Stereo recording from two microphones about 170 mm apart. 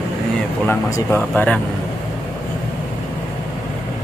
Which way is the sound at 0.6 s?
15° left (ahead or behind).